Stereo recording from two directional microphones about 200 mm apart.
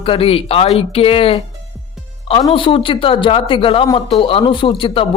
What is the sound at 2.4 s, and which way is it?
A man's voice, 25° left (ahead or behind).